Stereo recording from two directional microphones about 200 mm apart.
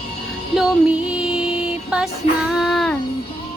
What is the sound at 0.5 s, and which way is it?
Music, 5° right (ahead or behind).